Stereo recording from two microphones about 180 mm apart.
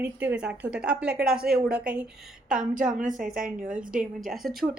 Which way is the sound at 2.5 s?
45° right (ahead or behind).